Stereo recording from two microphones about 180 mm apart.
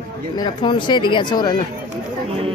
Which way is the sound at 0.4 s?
25° left (ahead or behind).